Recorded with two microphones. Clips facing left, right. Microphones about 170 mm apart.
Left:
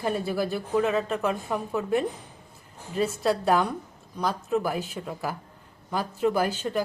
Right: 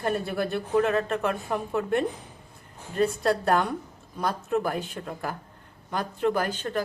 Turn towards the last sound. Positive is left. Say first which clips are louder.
# left 1 dB
turn(degrees=10)  # may be behind; listen again after turning